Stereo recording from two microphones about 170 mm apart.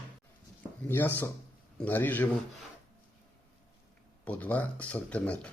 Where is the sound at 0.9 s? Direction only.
10° left (ahead or behind).